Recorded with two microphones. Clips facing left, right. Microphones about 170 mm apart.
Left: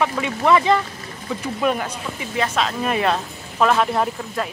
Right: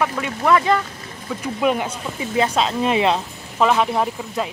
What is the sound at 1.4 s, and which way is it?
Speech, 15° right (ahead or behind).